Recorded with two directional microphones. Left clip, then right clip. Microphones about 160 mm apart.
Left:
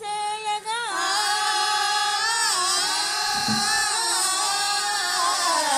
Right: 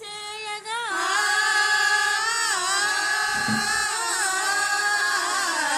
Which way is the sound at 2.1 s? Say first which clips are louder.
Left 1 dB; 30° right (ahead or behind).